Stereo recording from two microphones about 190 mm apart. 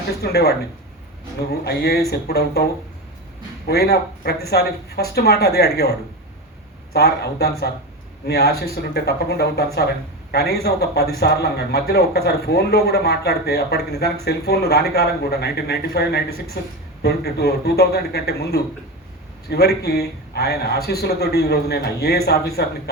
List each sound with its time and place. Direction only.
0.2 s a man's voice: 55° left (ahead or behind)
3.7 s a man's voice: 60° left (ahead or behind)
6.9 s a man's voice: 55° left (ahead or behind)